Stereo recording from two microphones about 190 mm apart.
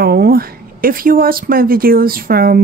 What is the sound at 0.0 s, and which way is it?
Speech, 55° right (ahead or behind).